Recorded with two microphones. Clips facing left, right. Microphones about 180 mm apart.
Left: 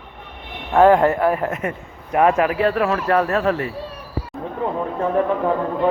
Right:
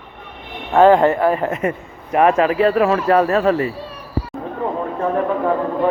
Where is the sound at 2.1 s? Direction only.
15° right (ahead or behind).